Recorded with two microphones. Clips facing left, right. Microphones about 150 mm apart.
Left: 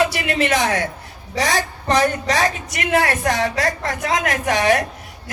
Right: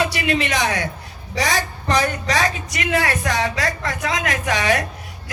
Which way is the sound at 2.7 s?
50° left (ahead or behind).